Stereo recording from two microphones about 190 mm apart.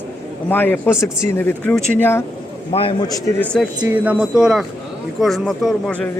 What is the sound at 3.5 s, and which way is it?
A man's voice, 5° right (ahead or behind).